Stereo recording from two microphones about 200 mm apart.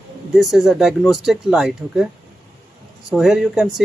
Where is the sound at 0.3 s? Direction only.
Centre (ahead or behind).